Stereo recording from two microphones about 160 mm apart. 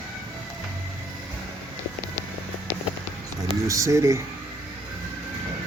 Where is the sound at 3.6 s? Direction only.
20° right (ahead or behind).